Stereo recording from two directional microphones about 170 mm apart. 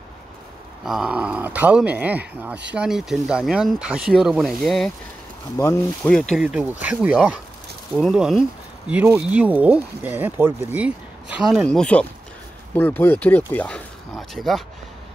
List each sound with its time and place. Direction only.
0.8 s speech: 5° right (ahead or behind)
5.6 s speech: 15° left (ahead or behind)
6.0 s speech: 5° left (ahead or behind)